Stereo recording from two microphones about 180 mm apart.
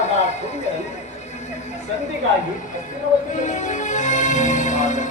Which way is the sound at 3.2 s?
45° left (ahead or behind).